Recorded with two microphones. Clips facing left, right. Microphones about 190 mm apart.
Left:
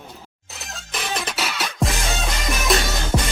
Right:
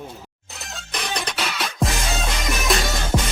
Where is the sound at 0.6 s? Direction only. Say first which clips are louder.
Even; centre (ahead or behind).